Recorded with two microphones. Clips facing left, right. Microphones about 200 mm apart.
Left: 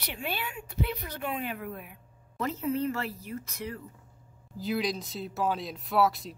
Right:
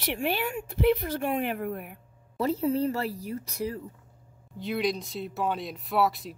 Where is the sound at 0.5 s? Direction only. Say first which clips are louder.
Right 10 dB; 45° right (ahead or behind).